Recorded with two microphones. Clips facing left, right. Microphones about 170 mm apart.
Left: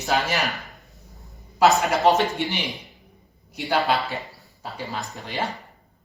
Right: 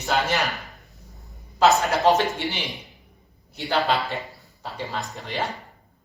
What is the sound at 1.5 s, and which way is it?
Speech, 20° left (ahead or behind).